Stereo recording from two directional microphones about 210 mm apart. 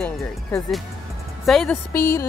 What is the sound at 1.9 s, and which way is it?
Speech, 15° left (ahead or behind).